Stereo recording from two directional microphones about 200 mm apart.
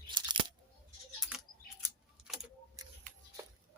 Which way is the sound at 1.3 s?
Centre (ahead or behind).